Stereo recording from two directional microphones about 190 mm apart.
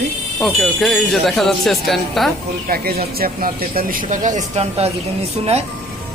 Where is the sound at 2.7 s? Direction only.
50° right (ahead or behind); by 4.9 s 35° right (ahead or behind).